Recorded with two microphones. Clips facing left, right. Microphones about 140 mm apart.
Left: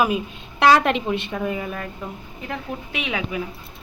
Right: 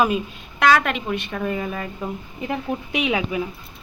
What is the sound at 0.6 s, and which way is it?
Speech, 30° left (ahead or behind).